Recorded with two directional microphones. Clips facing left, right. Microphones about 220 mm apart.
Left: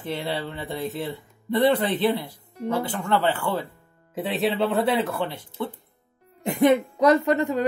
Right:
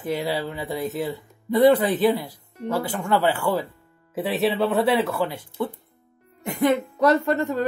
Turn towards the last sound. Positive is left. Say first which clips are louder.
# left 1 dB
turn(degrees=15)  # may be behind; listen again after turning